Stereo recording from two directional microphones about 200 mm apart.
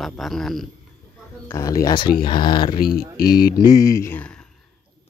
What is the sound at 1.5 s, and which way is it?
Speech, 15° left (ahead or behind).